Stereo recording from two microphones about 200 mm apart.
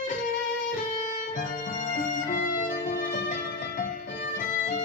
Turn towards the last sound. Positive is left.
turn(degrees=40)  # may be behind; listen again after turning